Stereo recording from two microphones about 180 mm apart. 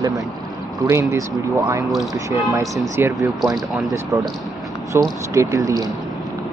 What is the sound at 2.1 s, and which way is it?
Speech, 20° right (ahead or behind).